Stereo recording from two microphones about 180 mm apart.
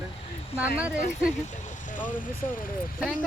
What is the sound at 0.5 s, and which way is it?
Speech, 5° right (ahead or behind).